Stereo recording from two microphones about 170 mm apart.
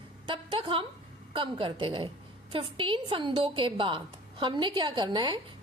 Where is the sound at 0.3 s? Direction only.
30° right (ahead or behind).